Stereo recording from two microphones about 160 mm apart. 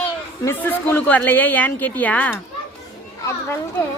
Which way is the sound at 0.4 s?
10° left (ahead or behind).